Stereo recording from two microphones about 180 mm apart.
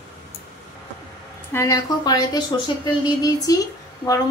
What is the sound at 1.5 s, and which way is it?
A woman's voice, 15° left (ahead or behind).